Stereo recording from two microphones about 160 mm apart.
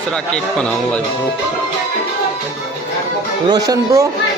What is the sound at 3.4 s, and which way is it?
Speech, 25° right (ahead or behind).